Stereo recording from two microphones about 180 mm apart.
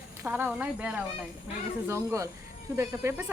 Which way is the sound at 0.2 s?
10° right (ahead or behind).